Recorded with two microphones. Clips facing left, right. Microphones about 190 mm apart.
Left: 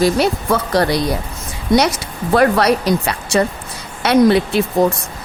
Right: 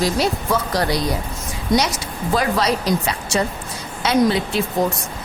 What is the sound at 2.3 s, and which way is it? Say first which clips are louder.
Speech: left 7 dB; 60° left (ahead or behind).